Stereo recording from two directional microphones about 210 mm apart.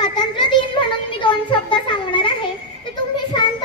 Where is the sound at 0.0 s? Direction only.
20° left (ahead or behind).